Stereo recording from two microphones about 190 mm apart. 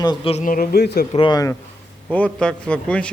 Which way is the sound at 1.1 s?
25° left (ahead or behind).